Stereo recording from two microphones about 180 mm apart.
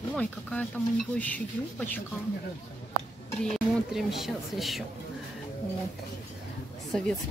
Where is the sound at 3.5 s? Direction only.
Centre (ahead or behind).